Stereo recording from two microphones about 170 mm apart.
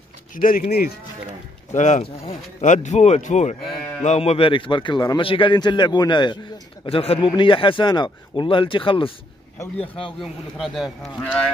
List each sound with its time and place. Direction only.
0.3 s speech: 55° left (ahead or behind)
1.7 s a man's voice: 45° left (ahead or behind)
10.2 s speech: centre (ahead or behind)